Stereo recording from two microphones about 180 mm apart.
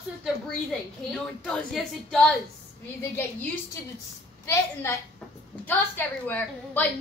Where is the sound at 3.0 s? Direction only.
15° left (ahead or behind).